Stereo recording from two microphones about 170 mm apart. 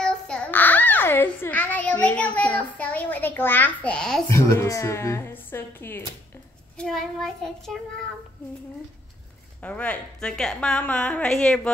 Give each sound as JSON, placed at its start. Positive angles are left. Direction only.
{"t": 0.0, "sound": "a child's voice", "side_deg": 5}
{"t": 4.3, "sound": "a woman's voice", "side_deg": 15}
{"t": 6.8, "sound": "a woman's voice", "side_deg": 0}
{"t": 9.6, "sound": "a woman's voice", "side_deg": 10}